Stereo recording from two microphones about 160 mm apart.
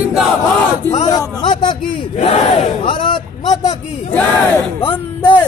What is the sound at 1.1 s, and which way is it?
Speech, 25° left (ahead or behind).